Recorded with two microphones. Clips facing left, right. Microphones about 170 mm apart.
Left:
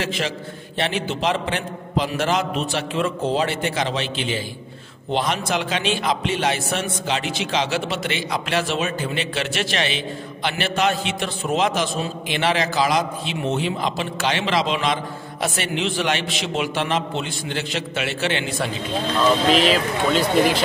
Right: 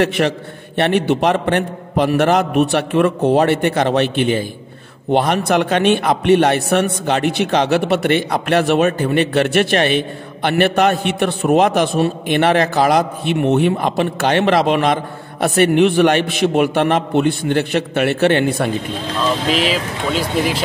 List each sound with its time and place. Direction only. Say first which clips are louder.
0.0 s a man's voice: right 9 dB; 60° right (ahead or behind)
19.4 s speech: left 1 dB; 5° right (ahead or behind)